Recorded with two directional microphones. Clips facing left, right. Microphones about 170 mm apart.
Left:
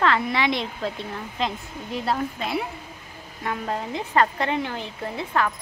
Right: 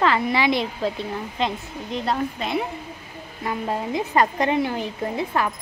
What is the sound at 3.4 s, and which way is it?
A woman's voice, 10° right (ahead or behind).